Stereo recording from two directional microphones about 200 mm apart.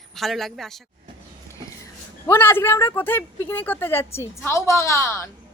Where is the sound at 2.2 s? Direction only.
10° left (ahead or behind).